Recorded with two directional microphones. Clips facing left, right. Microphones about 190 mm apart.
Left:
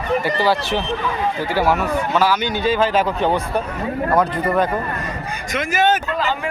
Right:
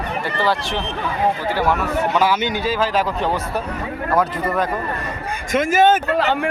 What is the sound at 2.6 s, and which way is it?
Speech, centre (ahead or behind).